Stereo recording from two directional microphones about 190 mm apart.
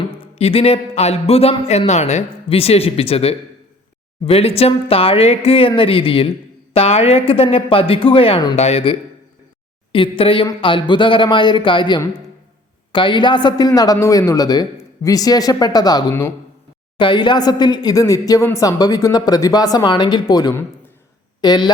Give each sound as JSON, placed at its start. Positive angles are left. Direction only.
{"t": 0.2, "sound": "a man's voice", "side_deg": 30}